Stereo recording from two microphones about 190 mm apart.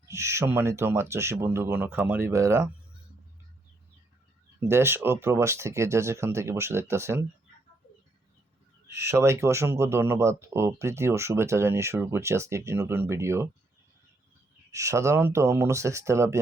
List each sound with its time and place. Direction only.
0.1 s speech: 15° right (ahead or behind)
4.6 s speech: 15° right (ahead or behind)
9.0 s speech: 15° right (ahead or behind)
14.7 s speech: 15° right (ahead or behind)